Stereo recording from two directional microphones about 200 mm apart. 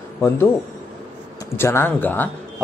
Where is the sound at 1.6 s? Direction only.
10° left (ahead or behind).